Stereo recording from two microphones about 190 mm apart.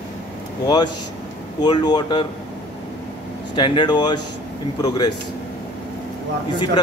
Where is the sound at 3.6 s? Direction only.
25° left (ahead or behind).